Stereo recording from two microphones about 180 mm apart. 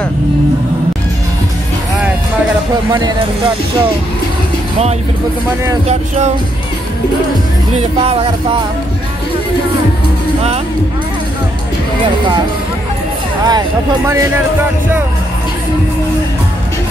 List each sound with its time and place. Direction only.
2.7 s speech: 20° right (ahead or behind)
5.9 s music: 40° right (ahead or behind)
7.7 s music: 35° right (ahead or behind)
13.5 s speech: 20° right (ahead or behind)